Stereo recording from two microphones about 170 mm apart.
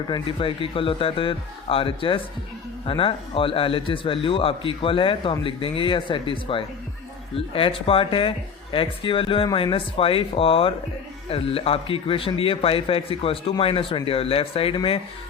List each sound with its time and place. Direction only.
0.1 s a man's voice: 30° left (ahead or behind)